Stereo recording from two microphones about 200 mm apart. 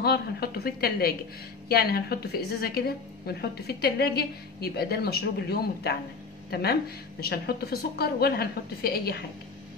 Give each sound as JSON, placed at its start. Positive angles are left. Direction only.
{"t": 0.0, "sound": "a woman's voice", "side_deg": 50}